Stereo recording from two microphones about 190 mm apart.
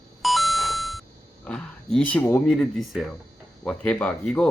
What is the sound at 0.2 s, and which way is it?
Doorbell, centre (ahead or behind).